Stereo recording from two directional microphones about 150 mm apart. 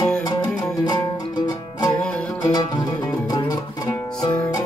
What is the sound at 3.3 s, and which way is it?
Music, 25° left (ahead or behind).